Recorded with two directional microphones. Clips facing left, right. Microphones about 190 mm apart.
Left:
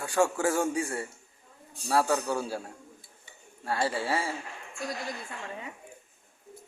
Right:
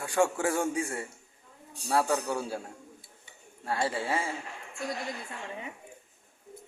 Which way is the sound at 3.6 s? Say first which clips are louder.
Left 1 dB; 20° right (ahead or behind).